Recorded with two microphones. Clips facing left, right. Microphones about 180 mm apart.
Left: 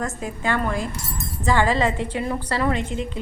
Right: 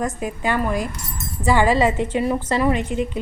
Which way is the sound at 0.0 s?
15° right (ahead or behind).